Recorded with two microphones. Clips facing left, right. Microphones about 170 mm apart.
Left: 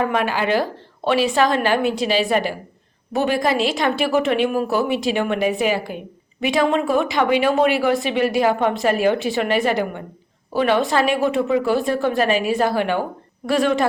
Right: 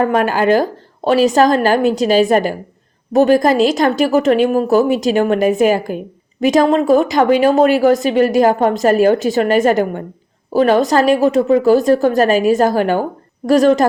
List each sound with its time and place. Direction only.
0.0 s a woman's voice: 45° right (ahead or behind)